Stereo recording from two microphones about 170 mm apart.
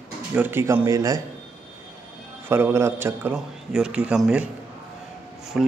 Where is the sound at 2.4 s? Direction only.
15° right (ahead or behind).